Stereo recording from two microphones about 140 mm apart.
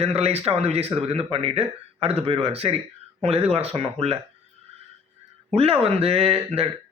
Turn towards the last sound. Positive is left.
turn(degrees=-45)  # may be behind; listen again after turning